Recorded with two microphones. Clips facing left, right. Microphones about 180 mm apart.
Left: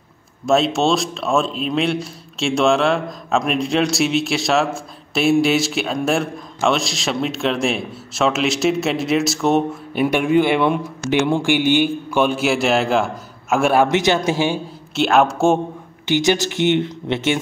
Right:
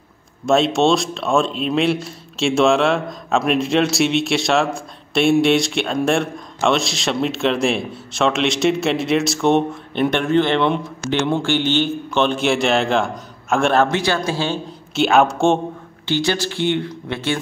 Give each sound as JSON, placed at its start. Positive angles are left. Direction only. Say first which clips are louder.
{"t": 0.5, "sound": "speech", "louder": "right 1 dB", "side_deg": 0}
{"t": 13.8, "sound": "speech", "louder": "left 3 dB", "side_deg": 20}
{"t": 15.0, "sound": "speech", "louder": "even", "side_deg": 0}
{"t": 16.1, "sound": "speech", "louder": "left 3 dB", "side_deg": 15}